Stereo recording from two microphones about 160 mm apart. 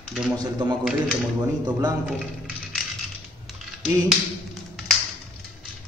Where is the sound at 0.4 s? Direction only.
25° right (ahead or behind).